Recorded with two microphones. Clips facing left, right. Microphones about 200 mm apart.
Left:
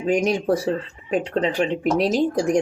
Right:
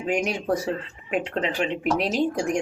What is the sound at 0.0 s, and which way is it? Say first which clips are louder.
Speech: left 5 dB; 40° left (ahead or behind).